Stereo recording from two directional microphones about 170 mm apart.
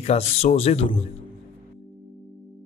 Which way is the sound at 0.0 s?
40° left (ahead or behind).